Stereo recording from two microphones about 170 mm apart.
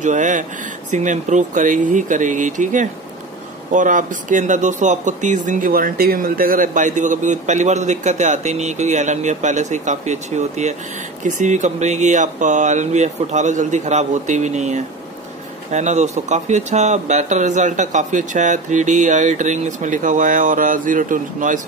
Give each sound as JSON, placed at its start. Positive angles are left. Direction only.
{"t": 0.0, "sound": "speech", "side_deg": -45}